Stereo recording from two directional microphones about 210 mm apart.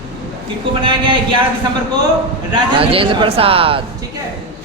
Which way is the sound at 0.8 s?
25° right (ahead or behind).